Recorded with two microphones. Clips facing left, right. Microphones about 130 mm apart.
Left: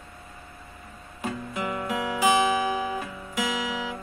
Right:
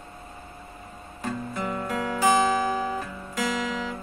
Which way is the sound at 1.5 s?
5° left (ahead or behind).